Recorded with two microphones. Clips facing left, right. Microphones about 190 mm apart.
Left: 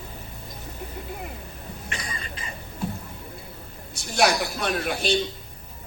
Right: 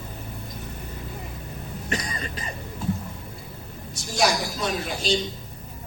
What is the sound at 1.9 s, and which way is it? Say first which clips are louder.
Cough: right 7 dB; 40° right (ahead or behind).